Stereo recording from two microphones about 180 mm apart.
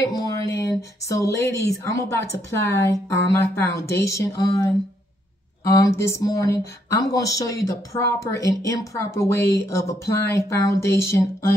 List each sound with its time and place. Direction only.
0.0 s a woman's voice: 20° left (ahead or behind)